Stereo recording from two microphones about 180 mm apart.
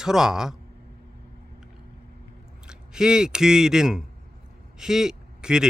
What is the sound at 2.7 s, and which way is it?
A man's voice, 5° right (ahead or behind).